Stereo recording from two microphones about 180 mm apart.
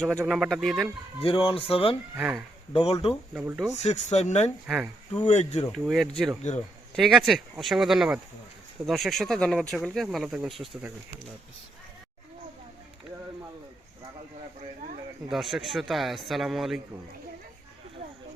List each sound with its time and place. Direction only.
0.3 s speech: centre (ahead or behind)
1.2 s speech: 30° left (ahead or behind)
2.1 s speech: 10° right (ahead or behind)
2.7 s speech: 35° left (ahead or behind)
3.3 s speech: 5° right (ahead or behind)
3.8 s speech: 40° left (ahead or behind)
4.6 s speech: 10° right (ahead or behind)
5.3 s speech: 35° left (ahead or behind)
5.7 s speech: centre (ahead or behind)
15.3 s speech: centre (ahead or behind)